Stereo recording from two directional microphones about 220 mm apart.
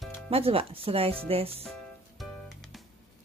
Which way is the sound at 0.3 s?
25° right (ahead or behind).